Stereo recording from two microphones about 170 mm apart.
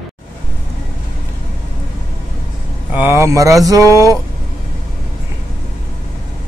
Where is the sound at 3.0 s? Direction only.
15° right (ahead or behind).